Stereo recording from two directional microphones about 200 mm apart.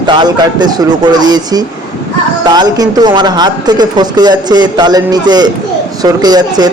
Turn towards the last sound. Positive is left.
turn(degrees=-20)  # may be behind; listen again after turning